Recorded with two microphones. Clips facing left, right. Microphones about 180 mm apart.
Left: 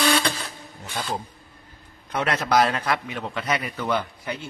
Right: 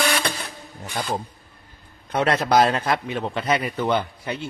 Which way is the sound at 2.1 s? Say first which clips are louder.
Right 3 dB; 30° right (ahead or behind).